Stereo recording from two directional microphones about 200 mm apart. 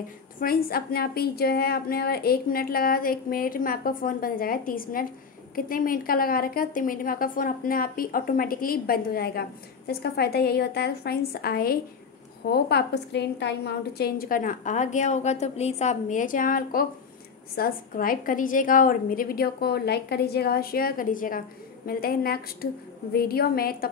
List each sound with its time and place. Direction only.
0.4 s a woman's voice: 50° left (ahead or behind)